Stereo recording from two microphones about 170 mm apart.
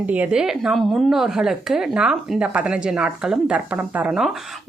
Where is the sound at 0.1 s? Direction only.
5° right (ahead or behind).